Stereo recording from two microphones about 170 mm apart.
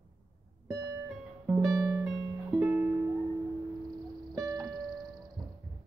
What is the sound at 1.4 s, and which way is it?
Music, 20° right (ahead or behind).